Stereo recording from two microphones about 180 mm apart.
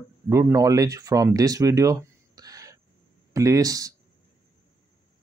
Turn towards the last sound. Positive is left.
turn(degrees=-20)  # may be behind; listen again after turning